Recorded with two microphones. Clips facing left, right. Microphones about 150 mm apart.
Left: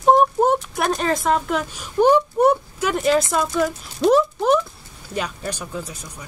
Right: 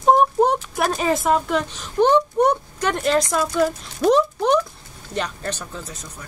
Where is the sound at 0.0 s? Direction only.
Centre (ahead or behind).